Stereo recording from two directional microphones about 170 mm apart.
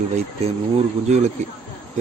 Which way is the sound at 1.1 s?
45° right (ahead or behind).